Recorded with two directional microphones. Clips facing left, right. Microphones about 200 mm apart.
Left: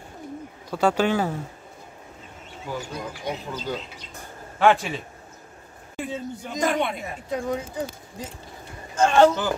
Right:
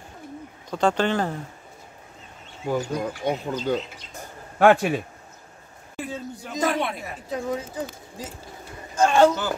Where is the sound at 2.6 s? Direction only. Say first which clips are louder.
Right 7 dB; 55° right (ahead or behind).